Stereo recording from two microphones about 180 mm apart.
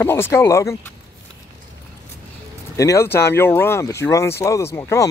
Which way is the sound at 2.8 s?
15° left (ahead or behind).